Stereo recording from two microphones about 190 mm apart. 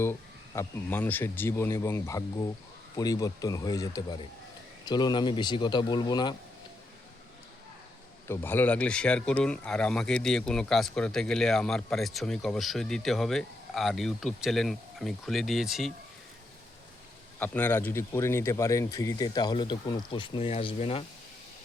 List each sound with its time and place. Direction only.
0.0 s speech: 15° left (ahead or behind)
8.3 s speech: 10° left (ahead or behind)
17.4 s speech: 10° left (ahead or behind); by 21.0 s 30° left (ahead or behind)